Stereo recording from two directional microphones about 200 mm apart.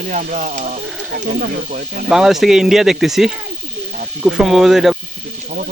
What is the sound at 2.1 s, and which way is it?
Speech, centre (ahead or behind).